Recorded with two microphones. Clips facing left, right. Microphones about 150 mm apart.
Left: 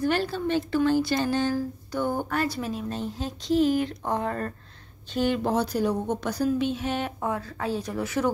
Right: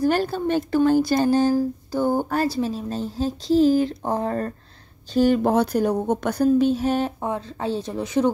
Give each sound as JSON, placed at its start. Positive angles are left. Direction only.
{"t": 0.0, "sound": "a woman's voice", "side_deg": -45}
{"t": 7.2, "sound": "a woman's voice", "side_deg": -25}